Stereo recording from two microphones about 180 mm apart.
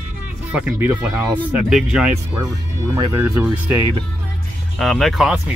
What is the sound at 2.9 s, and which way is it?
Speech, 20° right (ahead or behind).